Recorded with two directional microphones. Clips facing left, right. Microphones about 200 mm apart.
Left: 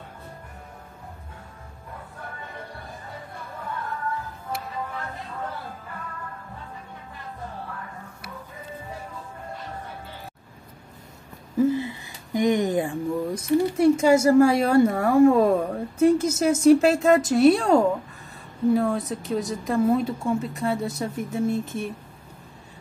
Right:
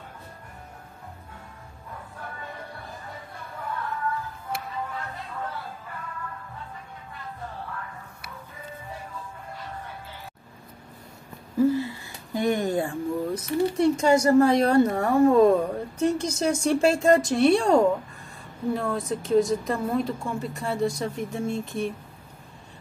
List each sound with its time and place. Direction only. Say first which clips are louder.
11.5 s speech: even; 20° left (ahead or behind); by 17.7 s centre (ahead or behind)
18.8 s speech: left 3 dB; centre (ahead or behind)